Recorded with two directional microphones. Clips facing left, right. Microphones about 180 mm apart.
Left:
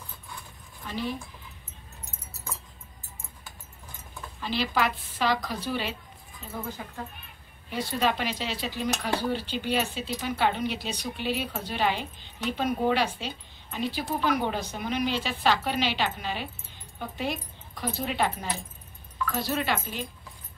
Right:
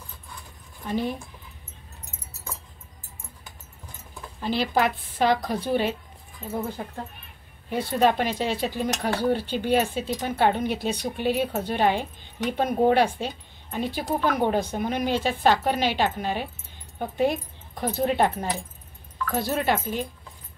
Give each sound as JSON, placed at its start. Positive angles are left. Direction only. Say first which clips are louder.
{"t": 0.8, "sound": "speech", "louder": "right 5 dB", "side_deg": -50}
{"t": 4.4, "sound": "speech", "louder": "right 4 dB", "side_deg": -50}